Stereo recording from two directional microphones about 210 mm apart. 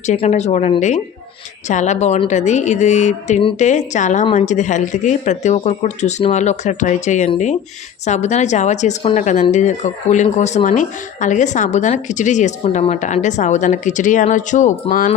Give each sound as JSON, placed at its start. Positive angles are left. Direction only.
{"t": 0.0, "sound": "speech", "side_deg": 35}